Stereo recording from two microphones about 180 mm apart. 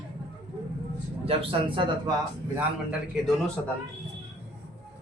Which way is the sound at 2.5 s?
5° right (ahead or behind).